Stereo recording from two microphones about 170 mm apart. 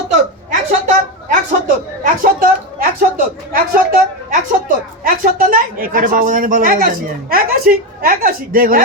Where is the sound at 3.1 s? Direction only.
55° right (ahead or behind).